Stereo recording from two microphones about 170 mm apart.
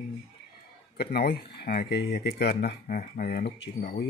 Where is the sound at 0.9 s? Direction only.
70° left (ahead or behind).